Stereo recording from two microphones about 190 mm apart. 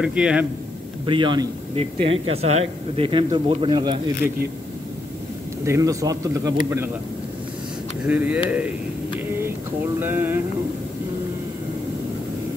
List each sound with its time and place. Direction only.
0.0 s speech: 5° right (ahead or behind)
1.0 s speech: 25° right (ahead or behind)
5.7 s speech: 15° right (ahead or behind)
8.1 s speech: 10° right (ahead or behind)
9.9 s speech: 10° right (ahead or behind)